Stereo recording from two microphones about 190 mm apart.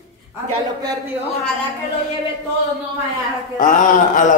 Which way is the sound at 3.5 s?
45° left (ahead or behind).